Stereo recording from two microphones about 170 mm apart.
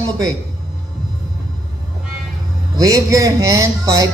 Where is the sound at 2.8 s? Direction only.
20° right (ahead or behind).